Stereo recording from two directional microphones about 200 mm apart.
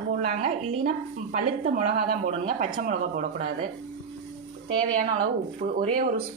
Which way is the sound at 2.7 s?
45° right (ahead or behind).